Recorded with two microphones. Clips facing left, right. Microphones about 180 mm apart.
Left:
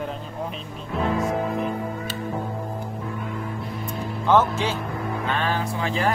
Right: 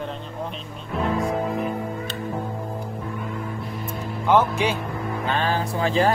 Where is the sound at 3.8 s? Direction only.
10° right (ahead or behind).